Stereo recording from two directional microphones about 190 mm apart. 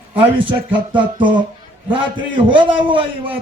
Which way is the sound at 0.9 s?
25° right (ahead or behind).